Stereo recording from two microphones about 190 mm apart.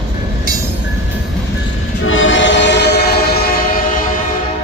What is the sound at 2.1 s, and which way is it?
Train, 85° left.